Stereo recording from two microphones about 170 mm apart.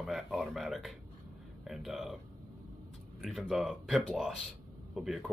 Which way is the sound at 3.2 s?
Centre (ahead or behind).